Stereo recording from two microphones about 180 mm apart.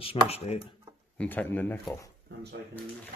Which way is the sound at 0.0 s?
35° left (ahead or behind).